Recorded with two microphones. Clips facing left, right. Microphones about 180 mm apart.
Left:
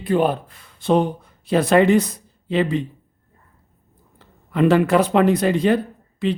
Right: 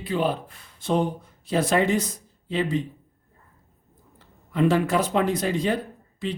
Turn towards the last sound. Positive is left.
turn(degrees=65)  # may be behind; listen again after turning